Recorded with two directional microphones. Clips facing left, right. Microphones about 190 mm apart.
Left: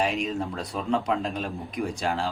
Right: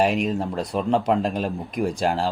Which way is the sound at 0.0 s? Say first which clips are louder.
Right 5 dB; 55° right (ahead or behind).